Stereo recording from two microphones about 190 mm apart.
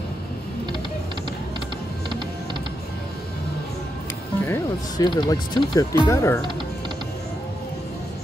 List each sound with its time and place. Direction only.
4.5 s speech: 20° left (ahead or behind)